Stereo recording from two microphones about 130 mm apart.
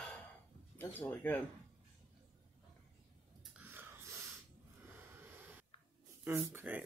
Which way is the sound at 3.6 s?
15° right (ahead or behind).